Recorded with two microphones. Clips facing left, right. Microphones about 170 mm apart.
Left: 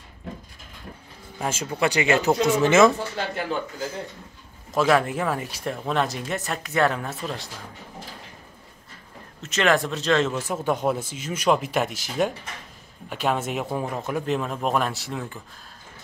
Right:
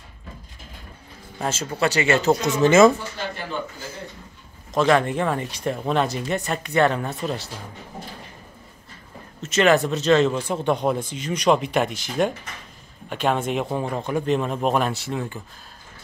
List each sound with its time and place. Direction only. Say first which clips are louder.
1.4 s speech: right 1 dB; 10° left (ahead or behind)
2.5 s speech: right 3 dB; 5° left (ahead or behind)
4.7 s speech: right 2 dB; 5° left (ahead or behind)
9.4 s speech: right 4 dB; centre (ahead or behind)